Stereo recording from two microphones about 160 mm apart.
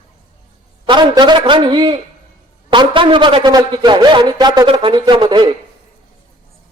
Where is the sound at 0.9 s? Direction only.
30° right (ahead or behind).